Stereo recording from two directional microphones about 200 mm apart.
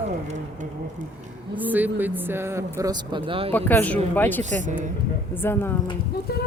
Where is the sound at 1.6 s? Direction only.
10° right (ahead or behind); by 3.5 s 25° right (ahead or behind).